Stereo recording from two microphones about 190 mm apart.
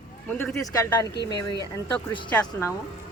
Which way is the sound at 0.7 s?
15° left (ahead or behind).